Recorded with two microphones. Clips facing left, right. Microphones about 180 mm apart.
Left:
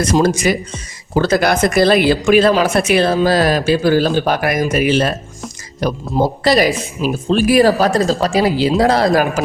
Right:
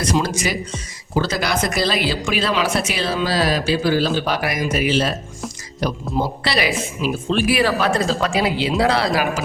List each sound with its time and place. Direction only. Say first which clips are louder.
0.0 s speech: left 7 dB; 45° left (ahead or behind)